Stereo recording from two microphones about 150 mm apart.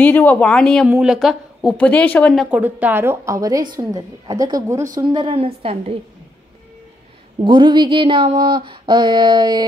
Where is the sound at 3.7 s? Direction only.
25° right (ahead or behind).